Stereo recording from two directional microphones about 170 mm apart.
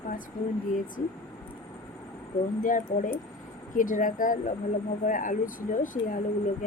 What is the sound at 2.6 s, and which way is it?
Speech, 50° left (ahead or behind).